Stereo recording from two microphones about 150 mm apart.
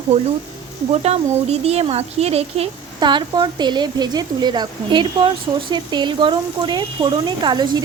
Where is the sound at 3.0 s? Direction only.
30° right (ahead or behind).